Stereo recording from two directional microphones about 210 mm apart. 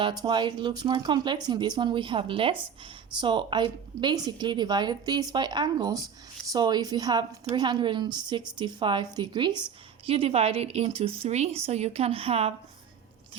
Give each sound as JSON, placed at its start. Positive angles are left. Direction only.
{"t": 0.0, "sound": "a woman's voice", "side_deg": -20}